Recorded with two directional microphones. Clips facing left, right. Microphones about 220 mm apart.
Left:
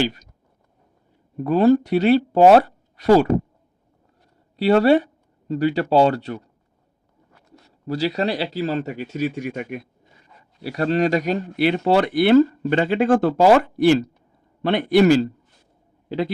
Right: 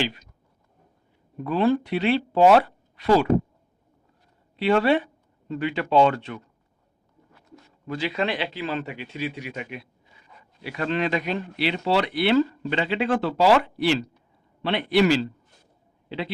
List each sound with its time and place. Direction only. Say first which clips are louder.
0.0 s speech: left 5 dB; 40° left (ahead or behind)
1.5 s speech: left 6 dB; 40° left (ahead or behind)
4.5 s speech: left 5 dB; 40° left (ahead or behind)
7.9 s speech: left 4 dB; 40° left (ahead or behind)
10.6 s a man's voice: left 6 dB; 40° left (ahead or behind)